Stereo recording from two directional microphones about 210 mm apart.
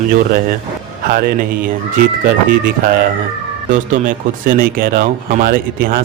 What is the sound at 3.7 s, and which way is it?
Speech, 35° right (ahead or behind).